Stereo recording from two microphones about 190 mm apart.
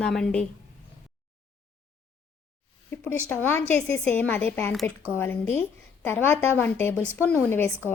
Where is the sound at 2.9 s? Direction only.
10° left (ahead or behind).